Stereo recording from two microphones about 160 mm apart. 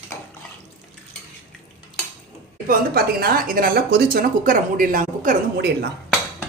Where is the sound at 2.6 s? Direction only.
65° right (ahead or behind); by 5.9 s 85° right.